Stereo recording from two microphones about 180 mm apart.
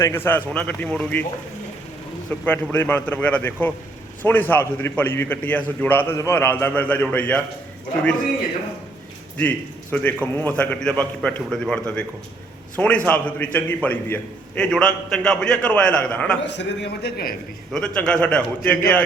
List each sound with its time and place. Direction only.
0.0 s a man's voice: 10° left (ahead or behind)
2.4 s a man's voice: 10° left (ahead or behind)
9.4 s a man's voice: 10° left (ahead or behind)
16.6 s a man's voice: 65° left (ahead or behind)
17.7 s a man's voice: 5° left (ahead or behind)